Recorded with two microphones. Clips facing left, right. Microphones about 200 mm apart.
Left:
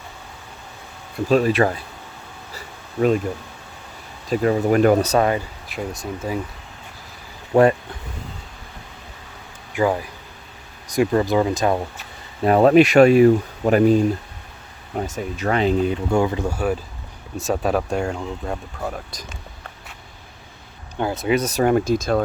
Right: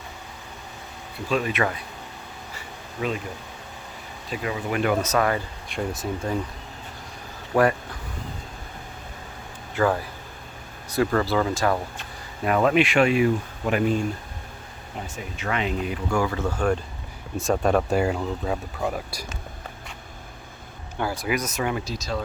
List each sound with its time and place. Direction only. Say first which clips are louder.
1.3 s speech: left 7 dB; 35° left (ahead or behind)
2.6 s a sound: left 10 dB; 45° left (ahead or behind)
4.3 s speech: left 10 dB; 45° left (ahead or behind); by 5.4 s 25° left (ahead or behind)
5.6 s speech: even; 5° left (ahead or behind)
7.5 s speech: left 5 dB; 25° left (ahead or behind)
9.7 s speech: left 2 dB; 15° left (ahead or behind)
12.5 s speech: left 7 dB; 35° left (ahead or behind); by 19.2 s 5° right (ahead or behind)
20.9 s speech: left 6 dB; 20° left (ahead or behind)
21.6 s speech: left 10 dB; 50° left (ahead or behind)